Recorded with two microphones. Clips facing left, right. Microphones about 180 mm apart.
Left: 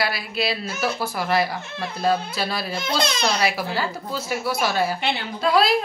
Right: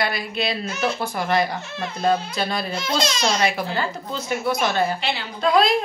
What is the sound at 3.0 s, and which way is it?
Speech, 60° left (ahead or behind).